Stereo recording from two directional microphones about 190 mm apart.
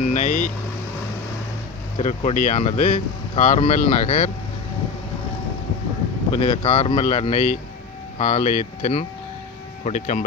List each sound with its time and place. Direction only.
0.0 s vehicle: 40° left (ahead or behind)
2.0 s speech: 35° left (ahead or behind)
6.3 s speech: 30° left (ahead or behind)